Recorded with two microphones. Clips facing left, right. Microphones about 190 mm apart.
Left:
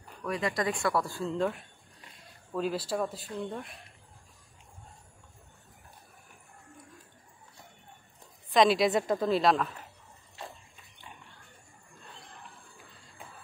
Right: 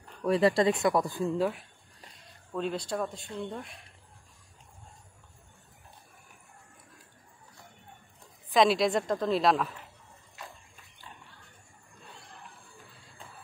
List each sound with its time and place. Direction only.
0.2 s speech: 30° right (ahead or behind)
1.4 s a sound: centre (ahead or behind)
2.5 s speech: 5° left (ahead or behind)
8.5 s speech: centre (ahead or behind)
10.4 s pig: 30° left (ahead or behind)